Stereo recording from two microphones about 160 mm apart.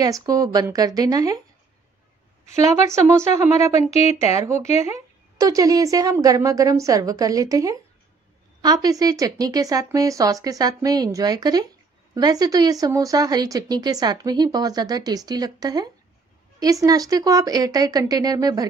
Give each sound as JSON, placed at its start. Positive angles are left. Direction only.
{"t": 0.0, "sound": "speech", "side_deg": -25}
{"t": 2.7, "sound": "speech", "side_deg": -20}
{"t": 3.7, "sound": "speech", "side_deg": 40}
{"t": 4.2, "sound": "speech", "side_deg": -20}